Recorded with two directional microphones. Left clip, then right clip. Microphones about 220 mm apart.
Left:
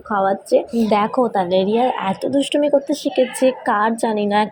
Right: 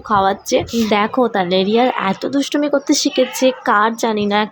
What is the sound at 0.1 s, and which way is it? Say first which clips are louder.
Speech: right 2 dB; 10° right (ahead or behind).